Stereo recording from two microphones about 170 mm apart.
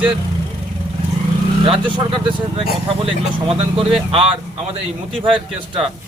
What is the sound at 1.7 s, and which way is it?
Speech, 30° right (ahead or behind).